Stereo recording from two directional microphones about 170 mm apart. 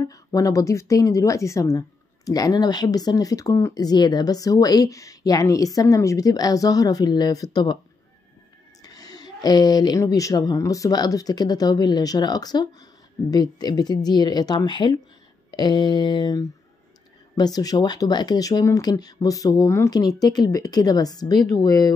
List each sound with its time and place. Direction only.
0.1 s speech: 20° left (ahead or behind)
8.8 s speech: 20° left (ahead or behind)